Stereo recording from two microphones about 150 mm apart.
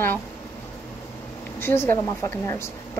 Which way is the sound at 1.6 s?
15° left (ahead or behind).